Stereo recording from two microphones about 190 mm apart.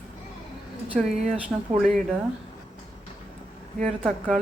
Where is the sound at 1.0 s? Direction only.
Centre (ahead or behind).